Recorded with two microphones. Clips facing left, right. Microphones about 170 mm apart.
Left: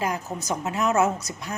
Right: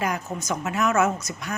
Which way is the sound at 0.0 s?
30° left (ahead or behind).